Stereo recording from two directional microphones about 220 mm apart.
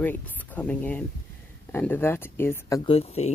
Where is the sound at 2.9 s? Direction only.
25° left (ahead or behind).